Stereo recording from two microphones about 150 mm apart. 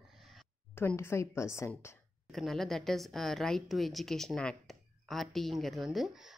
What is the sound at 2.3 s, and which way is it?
A woman's voice, centre (ahead or behind).